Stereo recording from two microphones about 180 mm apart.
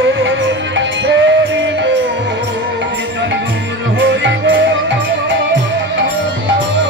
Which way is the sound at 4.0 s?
80° right.